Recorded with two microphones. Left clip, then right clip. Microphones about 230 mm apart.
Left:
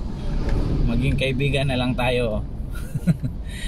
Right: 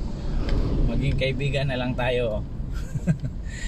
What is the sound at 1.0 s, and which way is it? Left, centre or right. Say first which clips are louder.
Speech: left 4 dB; centre.